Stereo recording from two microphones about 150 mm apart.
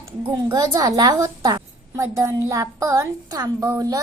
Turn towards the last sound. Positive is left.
turn(degrees=-25)  # may be behind; listen again after turning